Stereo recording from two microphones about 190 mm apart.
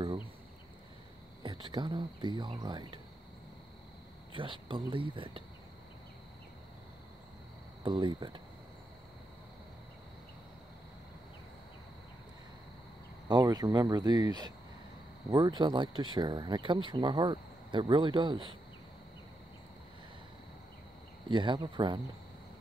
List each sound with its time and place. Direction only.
1.4 s speech: 25° right (ahead or behind)
4.3 s speech: 25° right (ahead or behind)
7.8 s speech: 25° right (ahead or behind)
13.3 s speech: 20° right (ahead or behind)
21.3 s speech: 25° right (ahead or behind)